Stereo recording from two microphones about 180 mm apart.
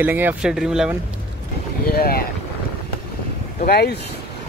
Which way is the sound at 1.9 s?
60° left (ahead or behind).